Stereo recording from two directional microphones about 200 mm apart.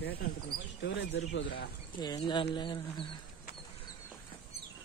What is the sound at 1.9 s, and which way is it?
Speech, 20° left (ahead or behind).